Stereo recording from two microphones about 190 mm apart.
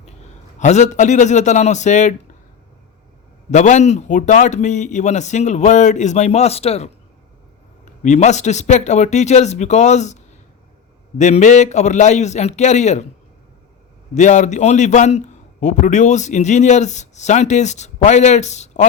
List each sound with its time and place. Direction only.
0.6 s a man's voice: 40° left (ahead or behind)
3.5 s a man's voice: 40° left (ahead or behind)
8.0 s a man's voice: 40° left (ahead or behind)
11.2 s a man's voice: 40° left (ahead or behind)
14.2 s a man's voice: 40° left (ahead or behind)